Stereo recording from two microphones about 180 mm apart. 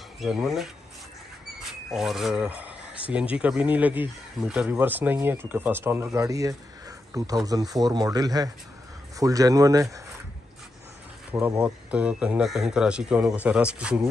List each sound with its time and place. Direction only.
0.2 s speech: centre (ahead or behind)
1.9 s speech: centre (ahead or behind); by 10.0 s 20° right (ahead or behind)
11.3 s speech: 10° right (ahead or behind)